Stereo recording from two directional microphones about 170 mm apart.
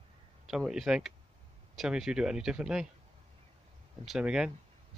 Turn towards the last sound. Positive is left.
turn(degrees=-5)  # may be behind; listen again after turning